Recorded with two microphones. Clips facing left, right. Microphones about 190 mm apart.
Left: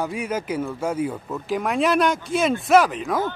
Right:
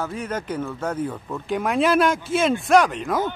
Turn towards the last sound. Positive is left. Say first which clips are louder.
# even
turn(degrees=0)  # may be behind; listen again after turning